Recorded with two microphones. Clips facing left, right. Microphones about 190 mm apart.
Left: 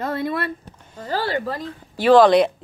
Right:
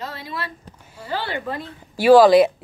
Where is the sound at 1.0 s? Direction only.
40° left (ahead or behind).